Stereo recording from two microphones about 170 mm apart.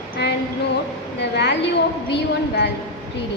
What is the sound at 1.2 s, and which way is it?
A child's voice, 90° left.